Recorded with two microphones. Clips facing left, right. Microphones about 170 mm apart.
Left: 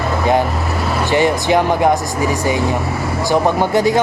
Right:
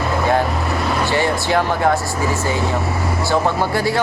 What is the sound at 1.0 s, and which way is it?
Speech, 15° left (ahead or behind).